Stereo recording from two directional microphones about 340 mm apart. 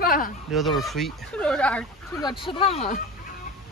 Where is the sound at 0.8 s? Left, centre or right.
Centre.